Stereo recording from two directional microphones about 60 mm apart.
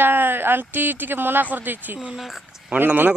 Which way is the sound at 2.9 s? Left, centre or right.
Right.